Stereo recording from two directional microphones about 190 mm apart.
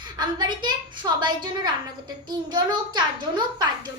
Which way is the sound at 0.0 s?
20° right (ahead or behind).